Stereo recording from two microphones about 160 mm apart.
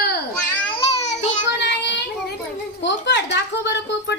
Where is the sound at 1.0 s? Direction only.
45° left (ahead or behind).